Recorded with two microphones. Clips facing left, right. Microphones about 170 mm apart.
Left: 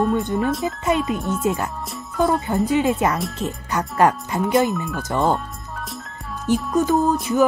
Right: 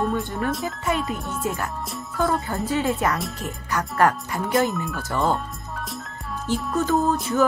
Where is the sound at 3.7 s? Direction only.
20° left (ahead or behind).